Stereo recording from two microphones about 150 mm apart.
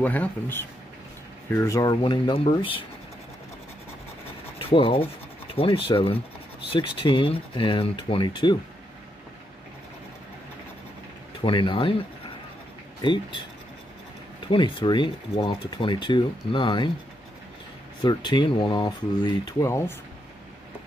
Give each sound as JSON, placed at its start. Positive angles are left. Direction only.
{"t": 0.0, "sound": "speech", "side_deg": 10}
{"t": 4.6, "sound": "rub", "side_deg": 35}
{"t": 5.6, "sound": "speech", "side_deg": 35}
{"t": 11.4, "sound": "speech", "side_deg": 35}
{"t": 13.0, "sound": "speech", "side_deg": 30}
{"t": 14.5, "sound": "speech", "side_deg": 35}
{"t": 18.0, "sound": "speech", "side_deg": 30}